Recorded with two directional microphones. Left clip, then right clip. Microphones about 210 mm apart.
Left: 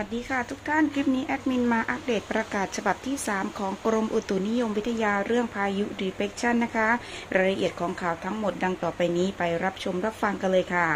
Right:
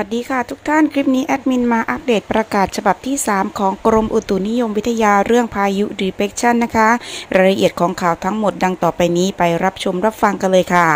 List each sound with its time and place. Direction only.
0.0 s speech: 25° right (ahead or behind)